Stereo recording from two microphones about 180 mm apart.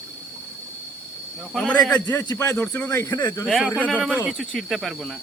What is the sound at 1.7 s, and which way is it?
A man's voice, 15° left (ahead or behind).